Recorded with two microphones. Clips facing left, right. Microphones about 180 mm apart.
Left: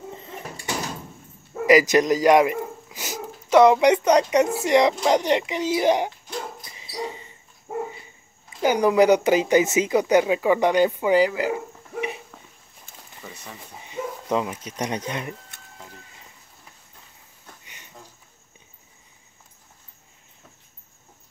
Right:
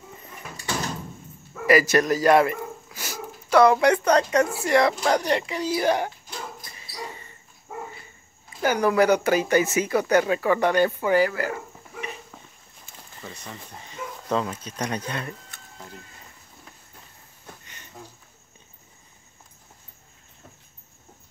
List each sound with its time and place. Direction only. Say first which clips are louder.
0.6 s door: even; 15° left (ahead or behind)
1.7 s speech: left 3 dB; 15° left (ahead or behind)
6.6 s dog: left 6 dB; 20° left (ahead or behind)
8.5 s speech: left 3 dB; 15° left (ahead or behind)
12.9 s dog: right 1 dB; 5° left (ahead or behind)